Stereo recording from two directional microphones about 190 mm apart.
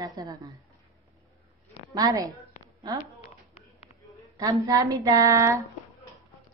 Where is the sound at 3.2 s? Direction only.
35° left (ahead or behind).